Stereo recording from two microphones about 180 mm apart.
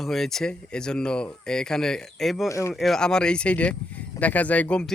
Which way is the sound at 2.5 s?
15° left (ahead or behind).